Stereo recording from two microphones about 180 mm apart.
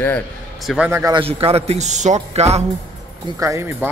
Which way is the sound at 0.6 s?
5° right (ahead or behind).